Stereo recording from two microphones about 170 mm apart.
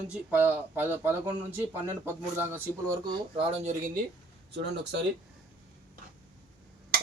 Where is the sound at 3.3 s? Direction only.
35° right (ahead or behind).